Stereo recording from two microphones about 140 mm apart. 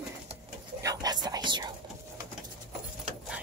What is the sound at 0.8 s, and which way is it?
Speech, 30° right (ahead or behind).